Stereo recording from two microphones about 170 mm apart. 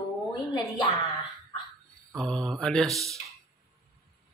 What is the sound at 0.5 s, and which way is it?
Speech, 25° left (ahead or behind).